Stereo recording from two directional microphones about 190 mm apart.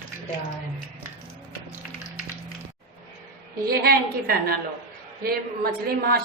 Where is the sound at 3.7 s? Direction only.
50° right (ahead or behind).